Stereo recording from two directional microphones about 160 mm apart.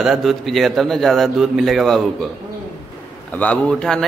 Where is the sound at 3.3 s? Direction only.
10° left (ahead or behind).